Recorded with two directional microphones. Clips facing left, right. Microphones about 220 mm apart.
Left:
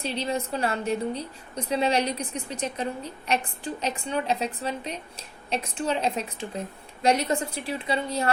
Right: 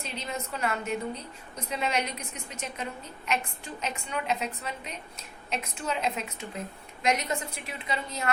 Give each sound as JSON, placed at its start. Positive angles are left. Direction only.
{"t": 0.0, "sound": "a woman's voice", "side_deg": 35}